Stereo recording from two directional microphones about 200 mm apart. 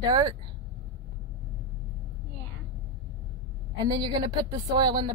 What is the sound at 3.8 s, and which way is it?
A woman's voice, 20° right (ahead or behind).